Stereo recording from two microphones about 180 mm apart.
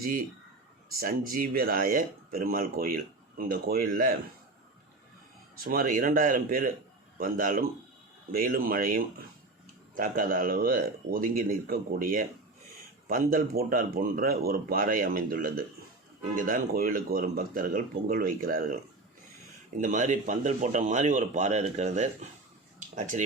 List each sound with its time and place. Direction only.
0.9 s speech: 55° right (ahead or behind)
5.5 s speech: 55° right (ahead or behind)
19.8 s speech: 45° right (ahead or behind)